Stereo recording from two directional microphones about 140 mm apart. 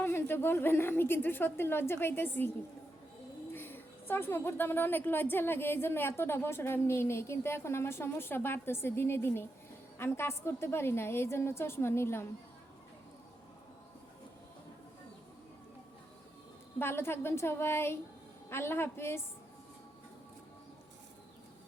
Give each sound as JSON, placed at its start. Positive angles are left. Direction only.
{"t": 0.0, "sound": "a woman's voice", "side_deg": 15}
{"t": 3.5, "sound": "a woman's voice", "side_deg": 15}
{"t": 16.7, "sound": "a woman's voice", "side_deg": 15}